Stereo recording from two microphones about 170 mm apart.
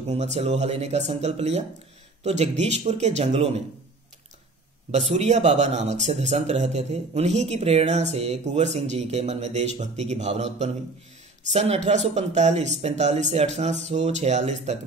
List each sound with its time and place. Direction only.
0.1 s speech: 40° right (ahead or behind)
4.9 s speech: 40° right (ahead or behind)